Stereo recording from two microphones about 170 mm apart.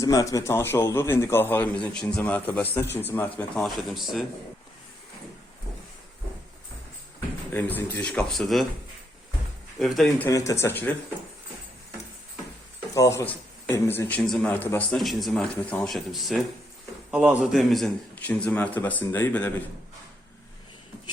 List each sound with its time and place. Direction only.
0.0 s a man's voice: 20° left (ahead or behind); by 4.3 s centre (ahead or behind)
7.5 s a man's voice: 10° left (ahead or behind)
9.7 s speech: centre (ahead or behind)
10.2 s a man's voice: 20° left (ahead or behind)
12.9 s a man's voice: 15° left (ahead or behind)